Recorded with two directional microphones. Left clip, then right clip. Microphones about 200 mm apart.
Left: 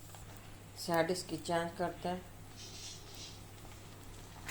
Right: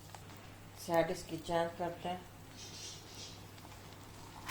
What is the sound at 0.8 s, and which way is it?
A woman's voice, 40° left (ahead or behind).